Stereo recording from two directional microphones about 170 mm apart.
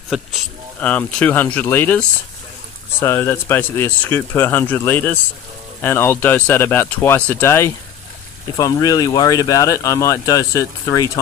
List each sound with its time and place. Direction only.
0.1 s speech: 5° left (ahead or behind); by 11.1 s 20° left (ahead or behind)